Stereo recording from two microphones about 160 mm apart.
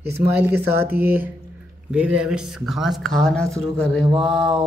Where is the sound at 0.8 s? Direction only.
10° right (ahead or behind); by 4.0 s 5° left (ahead or behind).